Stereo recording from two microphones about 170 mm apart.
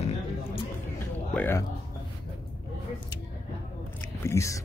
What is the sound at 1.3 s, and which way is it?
Speech, 10° left (ahead or behind).